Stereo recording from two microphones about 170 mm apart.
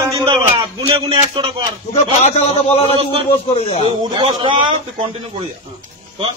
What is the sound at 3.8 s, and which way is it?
Speech, 35° right (ahead or behind).